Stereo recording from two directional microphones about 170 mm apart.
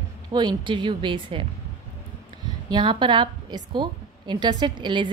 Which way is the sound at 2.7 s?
30° right (ahead or behind).